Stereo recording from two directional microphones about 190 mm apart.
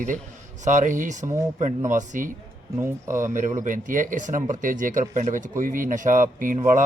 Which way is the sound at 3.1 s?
40° right (ahead or behind).